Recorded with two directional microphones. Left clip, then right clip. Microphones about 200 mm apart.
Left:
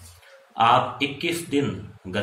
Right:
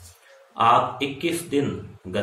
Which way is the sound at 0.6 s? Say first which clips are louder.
Even; 5° right (ahead or behind).